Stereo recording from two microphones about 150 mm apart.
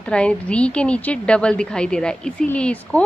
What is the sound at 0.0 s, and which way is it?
A woman's voice, 5° left (ahead or behind).